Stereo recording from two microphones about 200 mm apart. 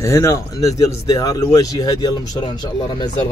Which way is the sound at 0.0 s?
15° left (ahead or behind).